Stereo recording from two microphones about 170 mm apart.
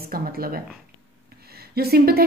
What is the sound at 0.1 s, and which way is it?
Speech, 60° right (ahead or behind).